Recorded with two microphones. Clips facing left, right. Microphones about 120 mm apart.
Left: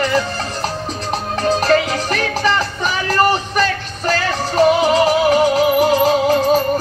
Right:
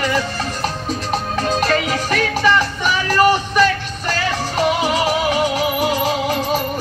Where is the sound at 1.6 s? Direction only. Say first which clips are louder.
Left 3 dB; 35° left (ahead or behind).